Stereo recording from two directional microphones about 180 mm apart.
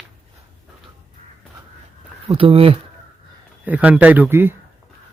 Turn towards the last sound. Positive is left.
turn(degrees=-10)  # may be behind; listen again after turning